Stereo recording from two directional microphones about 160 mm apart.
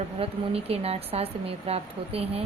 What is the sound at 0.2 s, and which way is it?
Speech, 40° right (ahead or behind).